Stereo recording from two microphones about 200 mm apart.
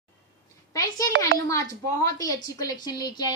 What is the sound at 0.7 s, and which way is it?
A woman's voice, 15° left (ahead or behind).